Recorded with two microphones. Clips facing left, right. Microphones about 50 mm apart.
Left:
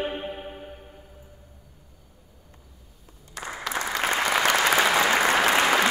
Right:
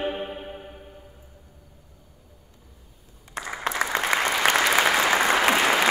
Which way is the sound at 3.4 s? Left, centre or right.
Right.